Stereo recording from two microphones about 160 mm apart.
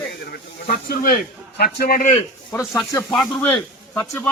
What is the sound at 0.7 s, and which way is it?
Speech, 70° left (ahead or behind).